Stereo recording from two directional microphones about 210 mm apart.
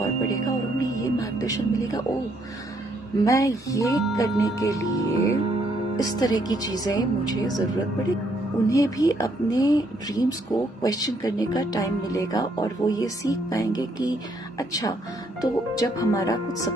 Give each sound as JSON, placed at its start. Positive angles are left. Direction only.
{"t": 0.3, "sound": "music", "side_deg": 15}
{"t": 3.3, "sound": "a woman's voice", "side_deg": 15}
{"t": 8.6, "sound": "a woman's voice", "side_deg": 15}